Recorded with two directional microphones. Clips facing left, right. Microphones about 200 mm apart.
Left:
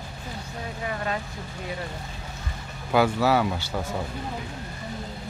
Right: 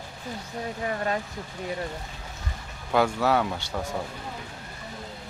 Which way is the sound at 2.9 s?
5° left (ahead or behind).